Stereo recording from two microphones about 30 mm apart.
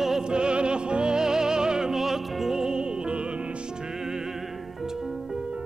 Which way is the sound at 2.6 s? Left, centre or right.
Right.